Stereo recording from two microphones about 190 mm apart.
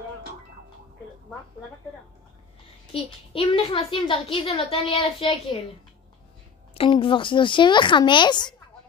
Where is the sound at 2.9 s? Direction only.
30° left (ahead or behind).